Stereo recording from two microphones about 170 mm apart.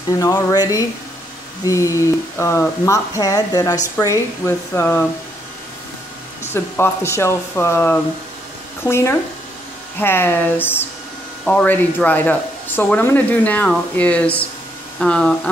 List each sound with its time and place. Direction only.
0.2 s speech: 20° left (ahead or behind)
6.4 s speech: 15° left (ahead or behind)